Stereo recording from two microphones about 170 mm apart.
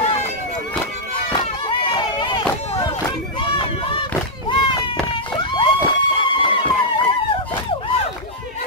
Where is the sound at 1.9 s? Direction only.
30° left (ahead or behind).